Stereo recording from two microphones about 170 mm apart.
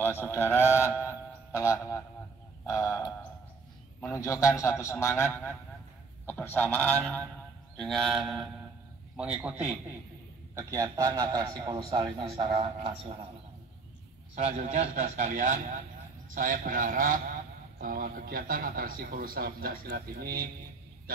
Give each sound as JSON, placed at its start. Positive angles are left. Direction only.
{"t": 0.0, "sound": "speech", "side_deg": 15}
{"t": 4.0, "sound": "speech", "side_deg": 15}
{"t": 7.7, "sound": "mantra", "side_deg": 5}
{"t": 9.1, "sound": "a man's voice", "side_deg": -5}
{"t": 10.5, "sound": "a man's voice", "side_deg": -20}
{"t": 14.3, "sound": "a man's voice", "side_deg": -45}